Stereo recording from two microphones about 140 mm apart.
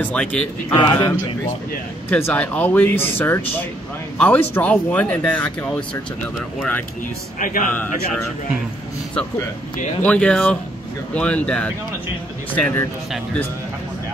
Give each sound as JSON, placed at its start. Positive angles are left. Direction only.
{"t": 0.0, "sound": "speech", "side_deg": 10}
{"t": 0.7, "sound": "a man's voice", "side_deg": 30}
{"t": 2.0, "sound": "speech", "side_deg": 15}
{"t": 7.3, "sound": "speech", "side_deg": 70}
{"t": 10.0, "sound": "speech", "side_deg": 10}